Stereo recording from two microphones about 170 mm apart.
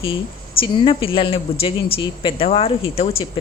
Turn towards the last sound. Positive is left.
turn(degrees=35)  # may be behind; listen again after turning